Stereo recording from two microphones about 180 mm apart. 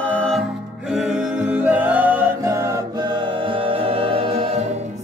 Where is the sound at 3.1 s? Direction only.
30° right (ahead or behind).